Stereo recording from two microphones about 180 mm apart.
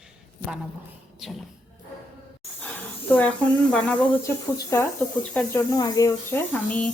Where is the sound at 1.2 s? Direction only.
Centre (ahead or behind).